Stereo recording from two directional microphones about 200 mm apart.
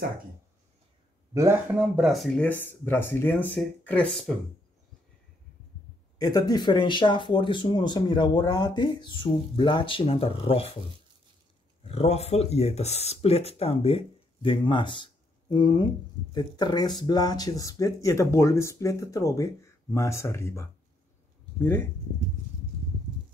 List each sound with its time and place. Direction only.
1.3 s speech: 15° right (ahead or behind); by 4.4 s 5° left (ahead or behind)
6.1 s speech: 20° left (ahead or behind)
11.8 s speech: 30° left (ahead or behind); by 21.8 s 10° left (ahead or behind)